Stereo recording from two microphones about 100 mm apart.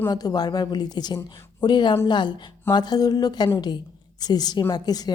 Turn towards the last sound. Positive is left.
turn(degrees=40)  # may be behind; listen again after turning